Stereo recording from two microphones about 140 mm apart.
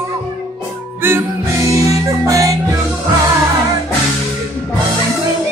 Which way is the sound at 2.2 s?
25° right (ahead or behind).